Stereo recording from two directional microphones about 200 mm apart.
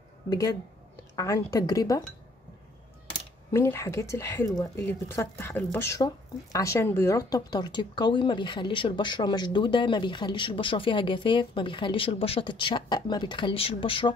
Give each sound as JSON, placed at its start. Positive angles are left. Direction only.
{"t": 0.3, "sound": "speech", "side_deg": 20}
{"t": 3.5, "sound": "speech", "side_deg": 15}